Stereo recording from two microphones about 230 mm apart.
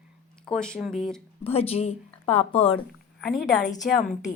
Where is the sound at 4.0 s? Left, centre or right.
Left.